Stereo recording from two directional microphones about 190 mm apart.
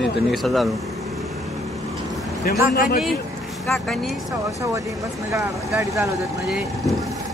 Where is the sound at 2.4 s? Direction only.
55° left (ahead or behind).